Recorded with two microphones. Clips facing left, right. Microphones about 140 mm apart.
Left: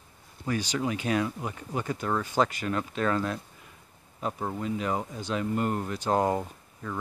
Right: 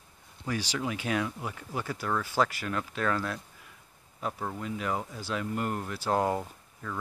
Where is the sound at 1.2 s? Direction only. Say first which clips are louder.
Left 3 dB; 15° left (ahead or behind).